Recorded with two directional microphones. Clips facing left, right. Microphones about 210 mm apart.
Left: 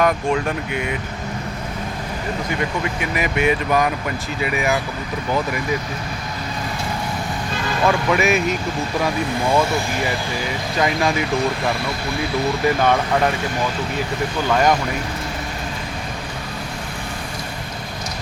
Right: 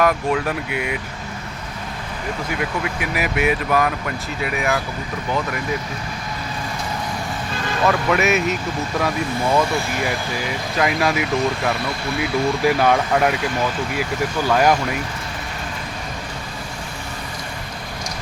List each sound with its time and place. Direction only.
0.0 s speech: 5° right (ahead or behind)
2.6 s speech: 5° right (ahead or behind)
7.9 s speech: centre (ahead or behind)
10.8 s speech: 5° right (ahead or behind)
12.6 s speech: 10° right (ahead or behind)
14.4 s speech: 5° right (ahead or behind)